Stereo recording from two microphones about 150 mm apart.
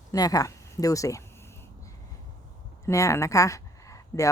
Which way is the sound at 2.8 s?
20° left (ahead or behind).